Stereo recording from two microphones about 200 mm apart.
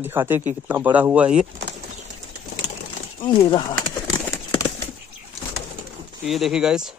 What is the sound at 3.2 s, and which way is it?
Speech, 25° left (ahead or behind).